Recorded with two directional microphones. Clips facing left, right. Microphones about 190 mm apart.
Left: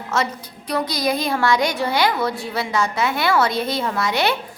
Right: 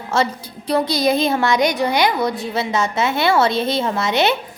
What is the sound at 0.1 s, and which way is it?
A woman's voice, 30° right (ahead or behind).